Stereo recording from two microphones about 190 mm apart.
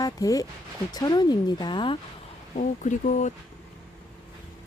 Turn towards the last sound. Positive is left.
turn(degrees=40)  # may be behind; listen again after turning